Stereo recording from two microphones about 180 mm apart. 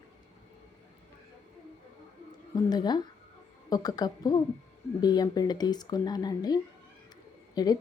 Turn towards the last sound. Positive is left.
turn(degrees=20)  # may be behind; listen again after turning